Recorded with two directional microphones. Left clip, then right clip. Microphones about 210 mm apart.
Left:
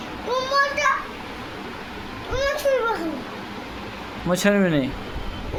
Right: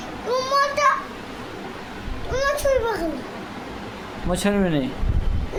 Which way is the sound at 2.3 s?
25° right (ahead or behind).